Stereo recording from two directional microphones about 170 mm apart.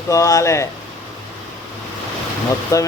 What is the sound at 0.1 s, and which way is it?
Speech, 20° left (ahead or behind).